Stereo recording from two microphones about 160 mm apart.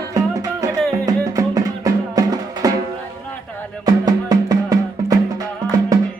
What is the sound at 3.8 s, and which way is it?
Music, 25° right (ahead or behind).